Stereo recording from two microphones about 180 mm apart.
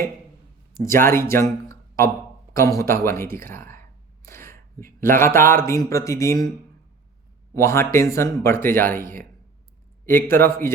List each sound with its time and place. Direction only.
0.9 s speech: 15° left (ahead or behind)
4.3 s a sound: 15° left (ahead or behind)
5.1 s speech: 15° left (ahead or behind)
7.5 s speech: 15° left (ahead or behind)
10.1 s speech: 15° left (ahead or behind)